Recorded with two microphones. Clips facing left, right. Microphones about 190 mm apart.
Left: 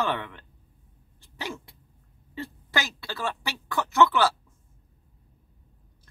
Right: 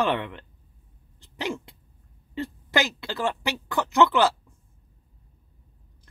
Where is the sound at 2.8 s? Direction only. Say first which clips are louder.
Right 5 dB; 20° right (ahead or behind).